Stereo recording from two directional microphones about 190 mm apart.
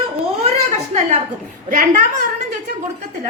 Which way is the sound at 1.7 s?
40° right (ahead or behind).